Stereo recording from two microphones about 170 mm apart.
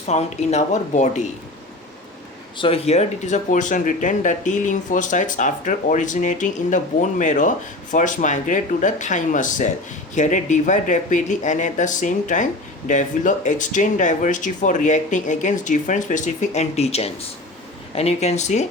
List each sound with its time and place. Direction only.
0.1 s speech: 40° left (ahead or behind)
2.6 s speech: 35° left (ahead or behind)